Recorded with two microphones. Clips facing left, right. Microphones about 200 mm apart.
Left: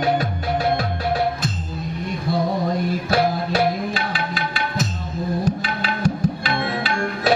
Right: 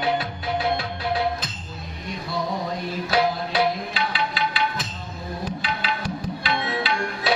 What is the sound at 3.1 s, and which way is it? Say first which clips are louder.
Music: left 1 dB; 45° left (ahead or behind).